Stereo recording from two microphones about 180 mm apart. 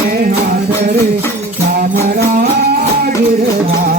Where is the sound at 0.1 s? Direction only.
50° right (ahead or behind).